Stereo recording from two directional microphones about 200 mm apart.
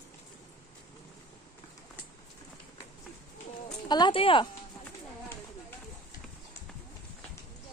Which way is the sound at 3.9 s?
25° left (ahead or behind).